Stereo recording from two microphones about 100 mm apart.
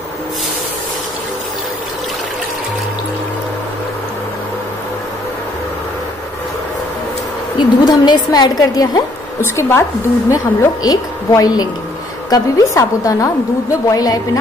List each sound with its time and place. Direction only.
7.5 s a woman's voice: 45° left (ahead or behind)
9.4 s a woman's voice: 25° left (ahead or behind)
10.3 s a woman's voice: 35° left (ahead or behind)